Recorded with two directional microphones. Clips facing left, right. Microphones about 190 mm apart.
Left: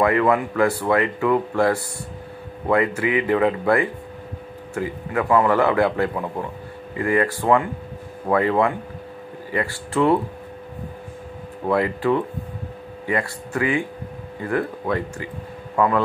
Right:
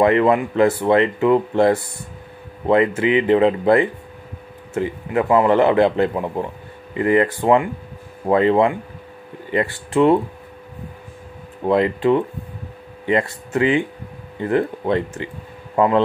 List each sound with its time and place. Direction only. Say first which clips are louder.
0.0 s speech: right 3 dB; 25° right (ahead or behind)
11.6 s speech: right 4 dB; 20° right (ahead or behind)